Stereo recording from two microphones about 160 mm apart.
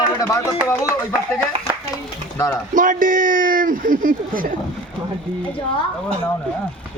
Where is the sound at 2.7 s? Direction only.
55° right (ahead or behind).